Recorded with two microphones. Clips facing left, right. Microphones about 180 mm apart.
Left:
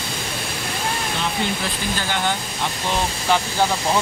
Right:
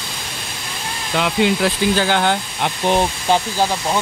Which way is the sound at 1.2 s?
90° right.